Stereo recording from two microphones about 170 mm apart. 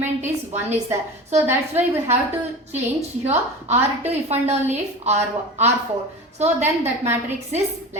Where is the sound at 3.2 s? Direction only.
40° right (ahead or behind).